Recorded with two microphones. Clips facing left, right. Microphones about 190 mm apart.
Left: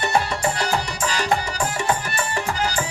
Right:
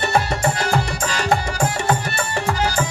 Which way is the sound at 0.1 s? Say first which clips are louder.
Right 2 dB; 50° right (ahead or behind).